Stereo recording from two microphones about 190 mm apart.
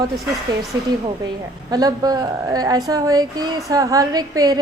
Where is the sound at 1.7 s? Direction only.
20° right (ahead or behind).